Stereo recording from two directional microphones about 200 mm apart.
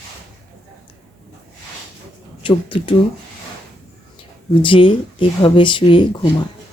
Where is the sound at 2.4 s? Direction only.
25° left (ahead or behind).